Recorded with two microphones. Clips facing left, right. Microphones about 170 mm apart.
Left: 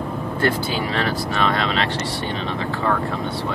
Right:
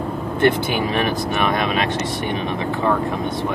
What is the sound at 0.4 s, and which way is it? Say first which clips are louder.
Speech: right 5 dB; 20° right (ahead or behind).